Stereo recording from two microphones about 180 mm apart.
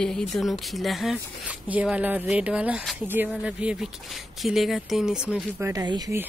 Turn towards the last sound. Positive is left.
turn(degrees=-20)  # may be behind; listen again after turning